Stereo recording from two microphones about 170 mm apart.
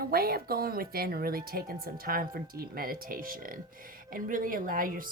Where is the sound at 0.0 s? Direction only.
65° right (ahead or behind).